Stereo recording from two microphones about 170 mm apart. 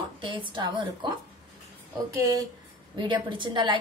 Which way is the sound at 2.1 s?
20° right (ahead or behind).